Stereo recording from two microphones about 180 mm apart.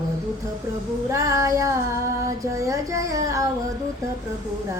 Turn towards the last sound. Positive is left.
turn(degrees=-15)  # may be behind; listen again after turning